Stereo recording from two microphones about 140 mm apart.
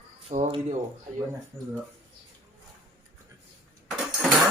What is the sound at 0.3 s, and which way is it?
Speech, 45° right (ahead or behind).